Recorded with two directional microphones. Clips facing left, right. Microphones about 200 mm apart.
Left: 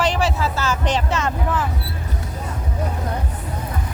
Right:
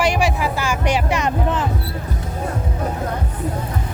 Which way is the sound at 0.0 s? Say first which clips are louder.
Right 2 dB; 10° right (ahead or behind).